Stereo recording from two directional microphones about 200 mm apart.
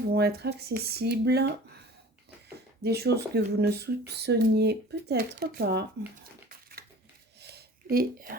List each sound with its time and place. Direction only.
0.1 s speech: 50° right (ahead or behind)
2.8 s speech: 55° right (ahead or behind)
7.4 s a sound: 50° right (ahead or behind)